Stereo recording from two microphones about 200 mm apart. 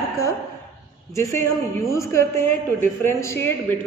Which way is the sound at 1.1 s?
15° left (ahead or behind).